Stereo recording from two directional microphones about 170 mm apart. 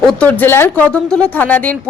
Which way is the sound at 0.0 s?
5° left (ahead or behind).